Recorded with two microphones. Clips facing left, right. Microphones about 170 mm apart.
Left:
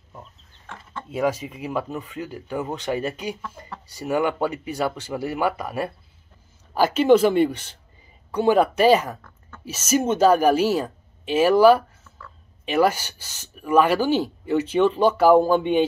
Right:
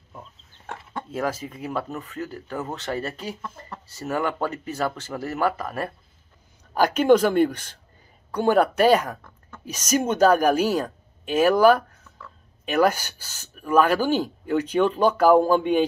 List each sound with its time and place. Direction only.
1.1 s speech: 10° left (ahead or behind)
11.3 s a sound: 10° left (ahead or behind)
12.7 s speech: 10° left (ahead or behind)